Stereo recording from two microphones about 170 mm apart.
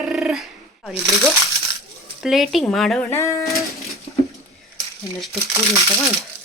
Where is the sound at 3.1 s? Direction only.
15° left (ahead or behind).